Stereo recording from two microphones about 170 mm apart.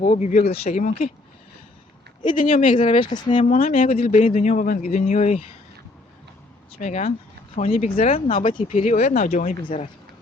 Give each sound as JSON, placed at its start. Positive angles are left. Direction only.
{"t": 0.0, "sound": "a man's voice", "side_deg": 45}
{"t": 2.2, "sound": "a man's voice", "side_deg": 50}
{"t": 2.8, "sound": "speech", "side_deg": 30}
{"t": 3.5, "sound": "speech", "side_deg": 55}
{"t": 3.8, "sound": "a man's voice", "side_deg": 40}
{"t": 6.8, "sound": "a man's voice", "side_deg": 45}
{"t": 8.7, "sound": "a man's voice", "side_deg": 45}